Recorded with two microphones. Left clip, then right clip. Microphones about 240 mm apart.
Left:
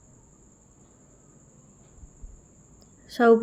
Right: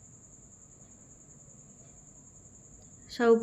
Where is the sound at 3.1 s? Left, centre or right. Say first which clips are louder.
Left 5 dB; left.